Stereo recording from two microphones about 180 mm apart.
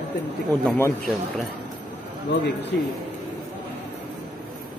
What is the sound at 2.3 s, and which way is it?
Speech, 75° left (ahead or behind).